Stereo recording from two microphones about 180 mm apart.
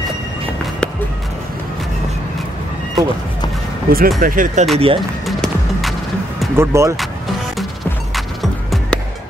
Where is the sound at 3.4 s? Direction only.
20° left (ahead or behind).